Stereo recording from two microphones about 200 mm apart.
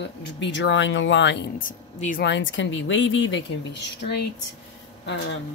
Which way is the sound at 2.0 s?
40° left (ahead or behind).